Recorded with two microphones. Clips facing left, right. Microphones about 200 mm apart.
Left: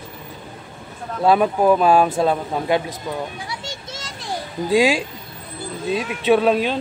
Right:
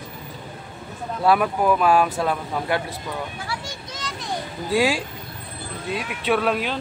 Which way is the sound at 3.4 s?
20° left (ahead or behind).